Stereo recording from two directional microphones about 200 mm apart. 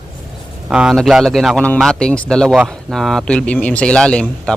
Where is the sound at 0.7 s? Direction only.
5° right (ahead or behind).